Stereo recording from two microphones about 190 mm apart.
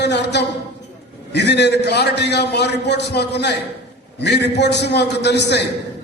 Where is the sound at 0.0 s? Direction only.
65° left (ahead or behind).